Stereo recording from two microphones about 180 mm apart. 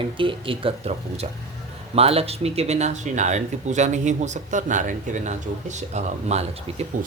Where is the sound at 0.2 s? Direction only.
30° right (ahead or behind).